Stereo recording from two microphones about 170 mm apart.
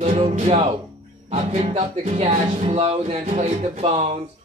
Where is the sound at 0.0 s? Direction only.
45° right (ahead or behind).